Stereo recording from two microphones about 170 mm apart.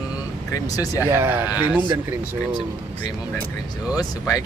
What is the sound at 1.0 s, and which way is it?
Speech, 15° right (ahead or behind).